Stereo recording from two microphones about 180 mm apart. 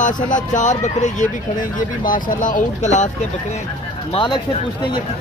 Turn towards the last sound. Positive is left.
turn(degrees=25)  # may be behind; listen again after turning